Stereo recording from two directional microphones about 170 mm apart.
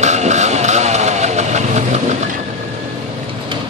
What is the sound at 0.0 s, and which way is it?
Vehicle, 45° right (ahead or behind).